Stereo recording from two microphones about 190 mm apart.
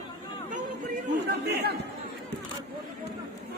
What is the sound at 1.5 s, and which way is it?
Chatter, 60° right (ahead or behind).